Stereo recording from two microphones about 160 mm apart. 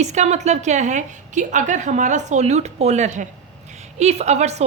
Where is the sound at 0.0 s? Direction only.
45° right (ahead or behind).